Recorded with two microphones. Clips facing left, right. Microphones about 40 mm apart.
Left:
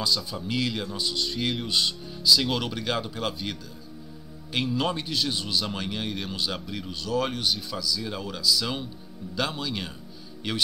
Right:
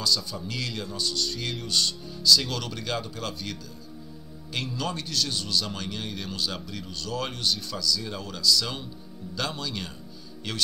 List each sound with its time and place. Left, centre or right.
0.0 s a man's voice: centre
4.7 s a man's voice: left